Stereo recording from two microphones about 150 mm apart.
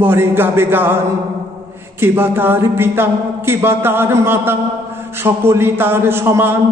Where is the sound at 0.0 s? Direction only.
15° right (ahead or behind).